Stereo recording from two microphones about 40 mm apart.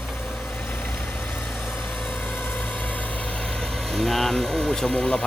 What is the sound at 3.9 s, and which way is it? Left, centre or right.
Speech, centre.